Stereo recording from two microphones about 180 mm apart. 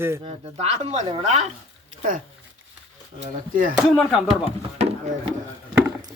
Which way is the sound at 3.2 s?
45° right (ahead or behind).